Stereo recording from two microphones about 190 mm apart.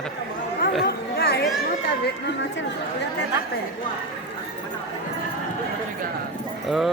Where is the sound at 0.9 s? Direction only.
55° left (ahead or behind).